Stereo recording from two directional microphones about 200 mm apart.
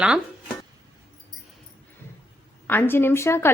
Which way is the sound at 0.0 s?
5° right (ahead or behind).